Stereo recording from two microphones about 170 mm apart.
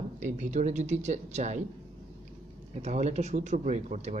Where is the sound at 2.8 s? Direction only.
40° right (ahead or behind).